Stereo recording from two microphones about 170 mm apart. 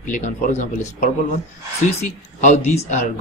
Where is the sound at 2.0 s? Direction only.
40° left (ahead or behind).